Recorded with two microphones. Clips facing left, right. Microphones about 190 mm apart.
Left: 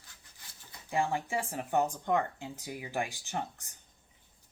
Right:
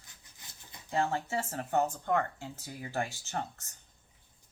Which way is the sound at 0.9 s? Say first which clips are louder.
Even; 15° left (ahead or behind).